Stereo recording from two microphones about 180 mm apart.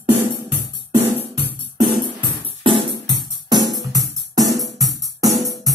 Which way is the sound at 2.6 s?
25° right (ahead or behind).